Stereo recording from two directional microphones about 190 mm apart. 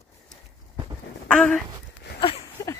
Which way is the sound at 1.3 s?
5° left (ahead or behind).